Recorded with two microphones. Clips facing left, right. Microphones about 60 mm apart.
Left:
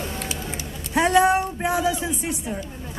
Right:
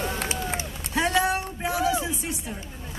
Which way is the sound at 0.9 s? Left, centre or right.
Left.